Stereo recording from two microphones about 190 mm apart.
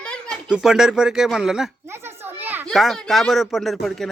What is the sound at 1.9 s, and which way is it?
Children playing, 10° right (ahead or behind).